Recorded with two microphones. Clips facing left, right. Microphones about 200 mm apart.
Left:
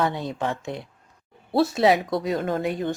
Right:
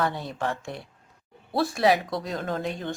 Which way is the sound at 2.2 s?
5° left (ahead or behind).